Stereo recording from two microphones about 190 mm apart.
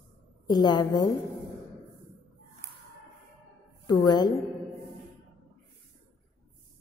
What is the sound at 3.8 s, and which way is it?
Speech, 20° left (ahead or behind).